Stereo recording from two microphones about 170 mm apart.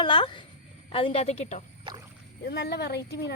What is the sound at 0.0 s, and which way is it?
Speech, 30° left (ahead or behind).